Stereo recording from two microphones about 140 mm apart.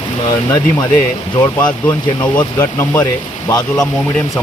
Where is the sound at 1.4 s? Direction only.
30° left (ahead or behind).